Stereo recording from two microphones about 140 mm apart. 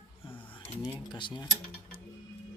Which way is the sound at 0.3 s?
15° left (ahead or behind).